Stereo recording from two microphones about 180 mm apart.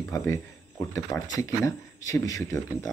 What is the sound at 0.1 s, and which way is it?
Speech, 15° left (ahead or behind).